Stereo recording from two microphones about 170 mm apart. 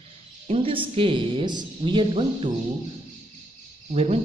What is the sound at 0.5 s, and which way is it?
A woman's voice, 35° right (ahead or behind).